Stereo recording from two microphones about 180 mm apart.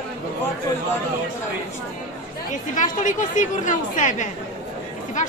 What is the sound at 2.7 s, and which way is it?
A woman's voice, 45° left (ahead or behind).